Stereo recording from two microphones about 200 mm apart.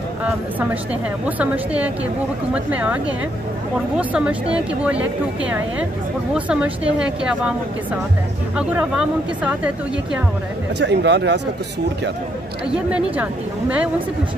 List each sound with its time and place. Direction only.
1.2 s speech: 5° right (ahead or behind)
6.3 s speech: 5° right (ahead or behind)
8.5 s speech: 5° right (ahead or behind)
10.8 s speech: 60° right (ahead or behind)
12.7 s speech: 5° right (ahead or behind)